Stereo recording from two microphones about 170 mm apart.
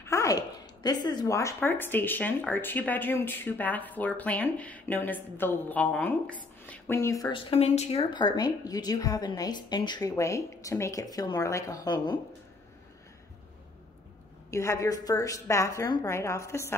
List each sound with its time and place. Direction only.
0.0 s a sound: 15° left (ahead or behind)
0.8 s speech: 25° left (ahead or behind)
7.3 s speech: 35° left (ahead or behind)
14.5 s speech: 15° left (ahead or behind)